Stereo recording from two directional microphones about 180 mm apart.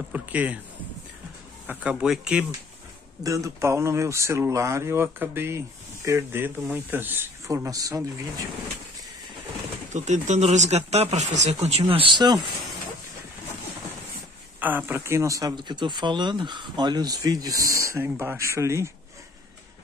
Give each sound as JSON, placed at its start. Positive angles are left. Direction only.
{"t": 0.1, "sound": "speech", "side_deg": -10}
{"t": 1.7, "sound": "speech", "side_deg": -5}
{"t": 3.3, "sound": "speech", "side_deg": -15}
{"t": 9.9, "sound": "speech", "side_deg": -40}
{"t": 14.6, "sound": "speech", "side_deg": -10}